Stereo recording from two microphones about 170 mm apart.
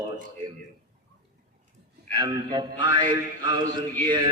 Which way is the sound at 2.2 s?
25° right (ahead or behind).